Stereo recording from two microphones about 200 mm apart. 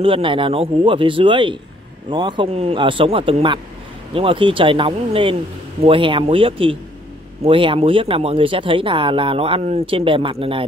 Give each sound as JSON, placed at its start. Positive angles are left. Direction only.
{"t": 0.0, "sound": "speech", "side_deg": -25}